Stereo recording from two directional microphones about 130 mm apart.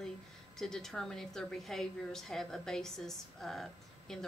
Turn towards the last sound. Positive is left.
turn(degrees=5)  # may be behind; listen again after turning